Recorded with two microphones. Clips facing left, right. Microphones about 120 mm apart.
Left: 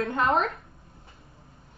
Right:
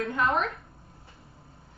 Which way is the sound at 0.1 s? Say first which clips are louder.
Left 2 dB; 35° left (ahead or behind).